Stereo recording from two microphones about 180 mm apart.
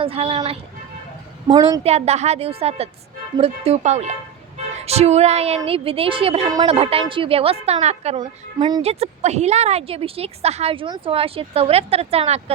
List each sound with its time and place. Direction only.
0.0 s music: 35° right (ahead or behind)
1.5 s a woman's voice: 20° right (ahead or behind)
1.8 s a woman's voice: 35° right (ahead or behind)
8.5 s a woman's voice: 25° right (ahead or behind)
8.8 s a woman's voice: 35° right (ahead or behind)